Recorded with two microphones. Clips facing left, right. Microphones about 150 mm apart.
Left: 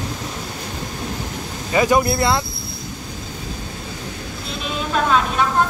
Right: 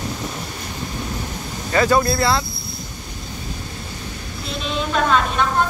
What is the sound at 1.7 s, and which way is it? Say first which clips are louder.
Speech: even; 15° left (ahead or behind).